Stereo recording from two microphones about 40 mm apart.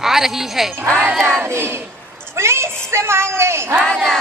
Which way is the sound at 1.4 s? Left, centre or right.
Right.